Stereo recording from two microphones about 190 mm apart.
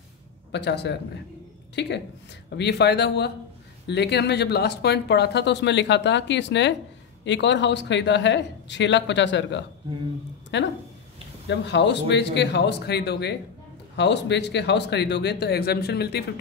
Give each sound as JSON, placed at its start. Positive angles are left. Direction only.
{"t": 0.5, "sound": "a man's voice", "side_deg": 65}